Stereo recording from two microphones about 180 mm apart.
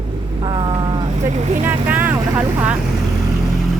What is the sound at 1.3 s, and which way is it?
Speech, 40° right (ahead or behind).